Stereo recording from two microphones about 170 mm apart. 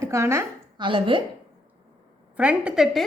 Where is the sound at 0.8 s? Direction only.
30° right (ahead or behind).